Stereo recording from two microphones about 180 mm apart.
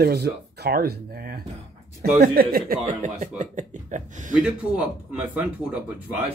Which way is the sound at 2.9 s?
45° right (ahead or behind).